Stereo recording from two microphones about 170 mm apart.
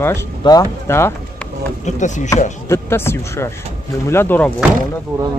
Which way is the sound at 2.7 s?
15° left (ahead or behind).